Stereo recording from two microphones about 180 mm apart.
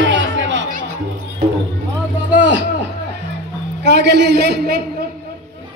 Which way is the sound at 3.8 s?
70° right (ahead or behind).